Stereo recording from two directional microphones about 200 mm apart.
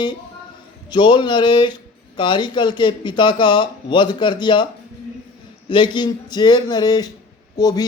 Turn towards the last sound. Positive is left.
turn(degrees=20)  # may be behind; listen again after turning